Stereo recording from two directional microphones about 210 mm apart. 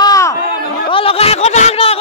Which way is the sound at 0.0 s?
15° left (ahead or behind).